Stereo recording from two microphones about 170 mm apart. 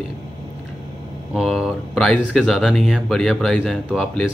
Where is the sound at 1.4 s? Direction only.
Centre (ahead or behind).